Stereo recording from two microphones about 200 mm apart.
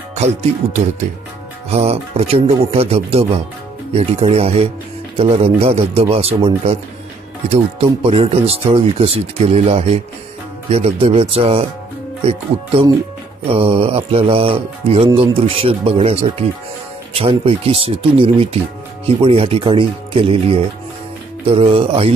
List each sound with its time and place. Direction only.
0.1 s speech: 35° right (ahead or behind)
1.7 s speech: 30° right (ahead or behind)